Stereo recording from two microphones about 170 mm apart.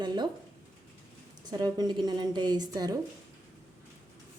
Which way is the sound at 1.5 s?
25° right (ahead or behind).